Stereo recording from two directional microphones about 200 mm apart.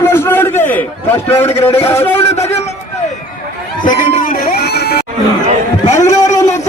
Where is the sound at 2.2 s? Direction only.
30° left (ahead or behind).